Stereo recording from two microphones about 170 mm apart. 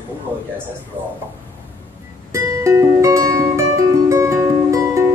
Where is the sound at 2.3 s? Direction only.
20° right (ahead or behind).